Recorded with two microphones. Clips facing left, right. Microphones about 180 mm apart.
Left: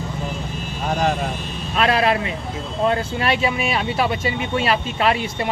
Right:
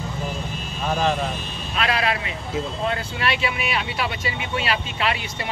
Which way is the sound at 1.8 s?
40° left (ahead or behind).